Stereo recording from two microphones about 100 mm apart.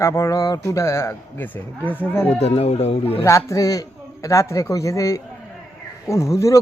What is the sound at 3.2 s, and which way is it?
A man's voice, 30° left (ahead or behind).